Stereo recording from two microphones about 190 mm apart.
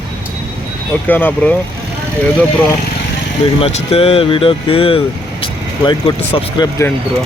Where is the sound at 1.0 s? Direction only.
10° left (ahead or behind).